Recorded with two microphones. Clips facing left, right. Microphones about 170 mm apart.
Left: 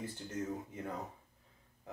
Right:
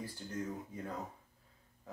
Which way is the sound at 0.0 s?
20° left (ahead or behind).